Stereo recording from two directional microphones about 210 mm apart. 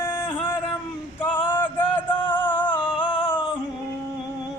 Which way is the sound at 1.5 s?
10° left (ahead or behind).